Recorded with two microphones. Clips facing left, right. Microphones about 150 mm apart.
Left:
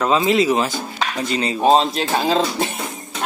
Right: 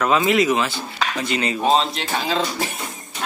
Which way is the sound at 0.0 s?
30° left (ahead or behind).